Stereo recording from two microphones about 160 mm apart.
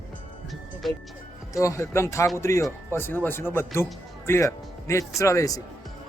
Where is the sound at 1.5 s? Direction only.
20° left (ahead or behind).